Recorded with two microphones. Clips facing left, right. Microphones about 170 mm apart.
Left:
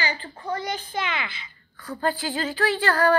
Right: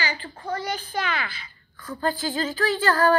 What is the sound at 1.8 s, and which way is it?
Speech, 40° left (ahead or behind).